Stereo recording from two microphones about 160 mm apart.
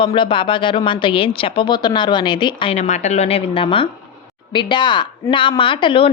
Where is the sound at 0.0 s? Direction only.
30° left (ahead or behind).